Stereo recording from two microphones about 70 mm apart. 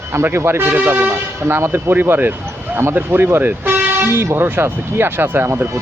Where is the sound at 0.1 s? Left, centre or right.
Right.